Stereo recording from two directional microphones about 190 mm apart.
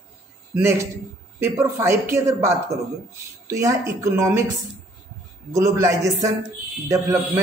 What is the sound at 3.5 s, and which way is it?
Speech, 15° right (ahead or behind).